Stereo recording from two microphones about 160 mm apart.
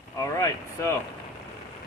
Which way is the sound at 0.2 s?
20° left (ahead or behind).